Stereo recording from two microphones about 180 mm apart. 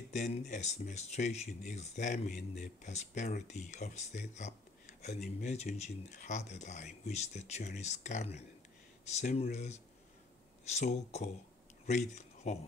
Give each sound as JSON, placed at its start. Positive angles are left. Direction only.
{"t": 0.1, "sound": "speech", "side_deg": 40}